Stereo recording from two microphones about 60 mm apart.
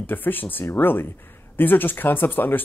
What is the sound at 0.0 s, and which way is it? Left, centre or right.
Speech, left.